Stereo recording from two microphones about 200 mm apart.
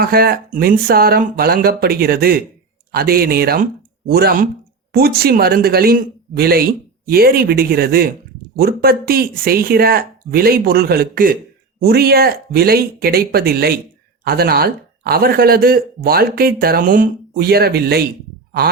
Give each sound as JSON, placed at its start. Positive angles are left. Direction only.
{"t": 0.0, "sound": "speech", "side_deg": -50}